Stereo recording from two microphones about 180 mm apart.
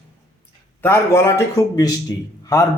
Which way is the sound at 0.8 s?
15° left (ahead or behind).